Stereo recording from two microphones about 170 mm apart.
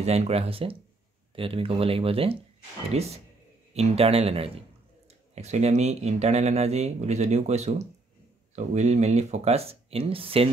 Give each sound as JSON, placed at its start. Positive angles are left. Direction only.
{"t": 0.0, "sound": "speech", "side_deg": -40}